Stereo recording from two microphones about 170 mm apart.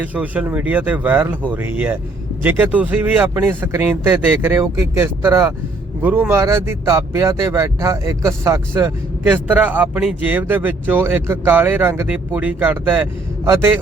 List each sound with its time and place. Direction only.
0.0 s speech: 10° right (ahead or behind)